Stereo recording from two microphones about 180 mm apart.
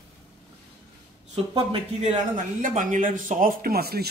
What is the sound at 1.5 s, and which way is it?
Speech, 40° right (ahead or behind).